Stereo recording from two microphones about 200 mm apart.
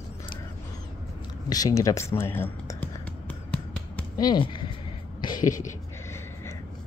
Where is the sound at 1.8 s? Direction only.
15° left (ahead or behind).